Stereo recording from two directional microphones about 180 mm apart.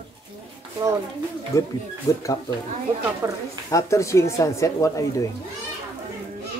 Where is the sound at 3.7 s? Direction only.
15° left (ahead or behind).